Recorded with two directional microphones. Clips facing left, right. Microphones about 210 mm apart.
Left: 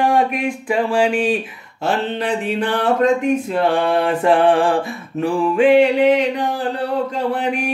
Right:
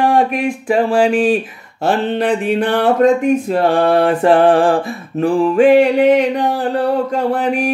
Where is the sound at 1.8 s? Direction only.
55° right (ahead or behind).